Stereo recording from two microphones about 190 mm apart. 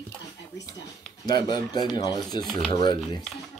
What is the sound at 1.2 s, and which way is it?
Speech, 20° left (ahead or behind).